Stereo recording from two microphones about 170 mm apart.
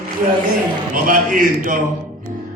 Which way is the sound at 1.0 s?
50° right (ahead or behind).